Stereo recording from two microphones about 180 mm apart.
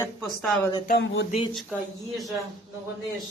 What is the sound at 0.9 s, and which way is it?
Speech, 80° left.